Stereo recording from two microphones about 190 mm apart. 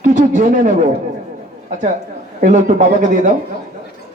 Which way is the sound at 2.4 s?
40° right (ahead or behind).